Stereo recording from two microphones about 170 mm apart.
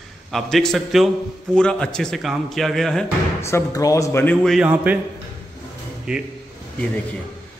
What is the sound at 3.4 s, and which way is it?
Speech, 20° left (ahead or behind).